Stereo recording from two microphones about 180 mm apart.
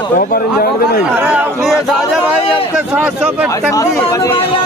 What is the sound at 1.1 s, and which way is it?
Speech, 10° right (ahead or behind).